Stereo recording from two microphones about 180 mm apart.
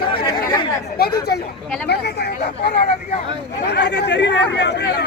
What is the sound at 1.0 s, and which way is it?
Speech, 60° left (ahead or behind).